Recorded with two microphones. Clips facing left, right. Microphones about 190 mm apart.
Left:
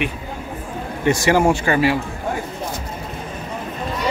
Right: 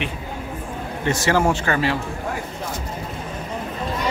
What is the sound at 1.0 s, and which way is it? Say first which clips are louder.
Speech: left 4 dB; 15° left (ahead or behind).